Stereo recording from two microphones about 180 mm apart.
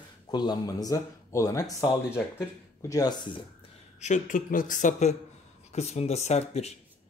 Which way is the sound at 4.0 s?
45° left (ahead or behind).